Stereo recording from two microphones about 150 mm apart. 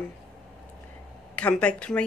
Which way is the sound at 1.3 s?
10° left (ahead or behind).